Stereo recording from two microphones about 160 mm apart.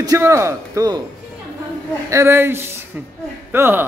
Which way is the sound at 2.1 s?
15° right (ahead or behind).